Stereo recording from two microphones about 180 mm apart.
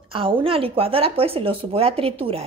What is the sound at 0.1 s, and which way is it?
Speech, 30° right (ahead or behind).